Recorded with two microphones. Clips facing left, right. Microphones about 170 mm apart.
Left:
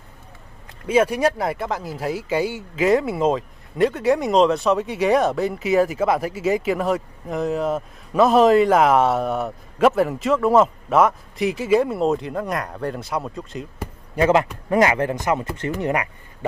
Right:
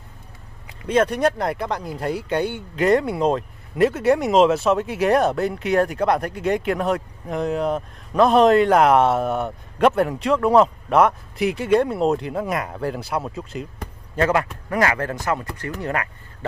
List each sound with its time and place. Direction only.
0.7 s speech: 5° left (ahead or behind)
14.1 s speech: 20° left (ahead or behind)